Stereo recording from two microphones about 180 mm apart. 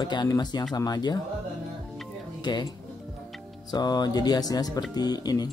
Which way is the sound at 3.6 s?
25° left (ahead or behind).